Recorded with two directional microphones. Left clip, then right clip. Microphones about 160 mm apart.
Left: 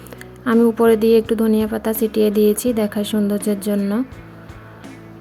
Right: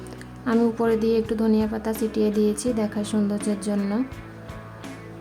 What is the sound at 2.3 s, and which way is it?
Speech, 10° right (ahead or behind).